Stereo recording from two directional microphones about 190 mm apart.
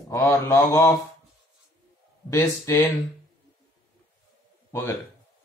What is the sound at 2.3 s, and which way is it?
Speech, 15° left (ahead or behind).